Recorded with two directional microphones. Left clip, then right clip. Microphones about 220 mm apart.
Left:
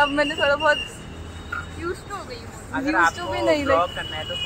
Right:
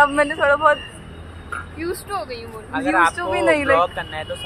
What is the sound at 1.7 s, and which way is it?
Speech, 50° right (ahead or behind).